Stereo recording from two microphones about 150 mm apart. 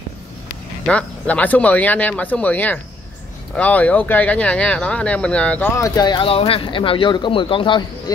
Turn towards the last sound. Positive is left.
turn(degrees=35)  # may be behind; listen again after turning